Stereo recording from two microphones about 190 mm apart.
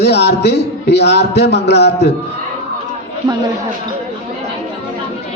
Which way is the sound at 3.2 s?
25° right (ahead or behind).